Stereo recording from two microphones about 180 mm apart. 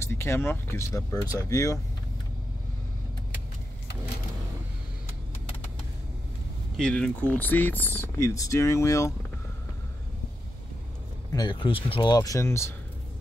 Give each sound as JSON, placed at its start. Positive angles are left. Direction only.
{"t": 0.0, "sound": "speech", "side_deg": 15}
{"t": 6.8, "sound": "speech", "side_deg": 5}
{"t": 11.3, "sound": "speech", "side_deg": 25}